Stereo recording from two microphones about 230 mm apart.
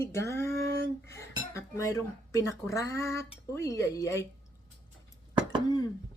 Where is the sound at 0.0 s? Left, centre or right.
Centre.